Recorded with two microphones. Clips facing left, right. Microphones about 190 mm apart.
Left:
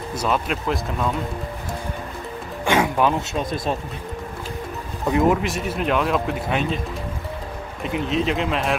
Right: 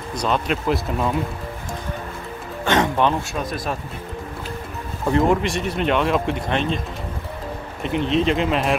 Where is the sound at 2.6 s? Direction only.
10° left (ahead or behind).